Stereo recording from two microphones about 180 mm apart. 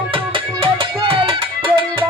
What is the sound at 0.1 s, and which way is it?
Music, 30° right (ahead or behind).